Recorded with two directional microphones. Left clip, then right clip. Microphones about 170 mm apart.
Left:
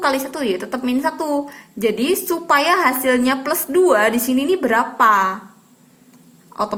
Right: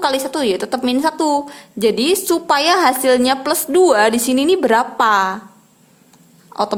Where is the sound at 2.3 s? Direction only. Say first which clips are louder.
Even; 55° right (ahead or behind); by 5.3 s 40° right (ahead or behind).